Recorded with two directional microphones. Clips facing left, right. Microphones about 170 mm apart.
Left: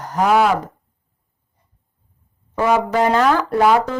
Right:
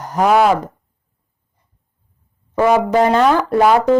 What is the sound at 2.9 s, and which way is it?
Speech, 25° right (ahead or behind).